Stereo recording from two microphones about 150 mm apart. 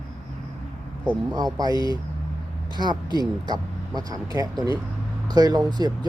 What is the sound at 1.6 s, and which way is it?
Speech, 25° right (ahead or behind).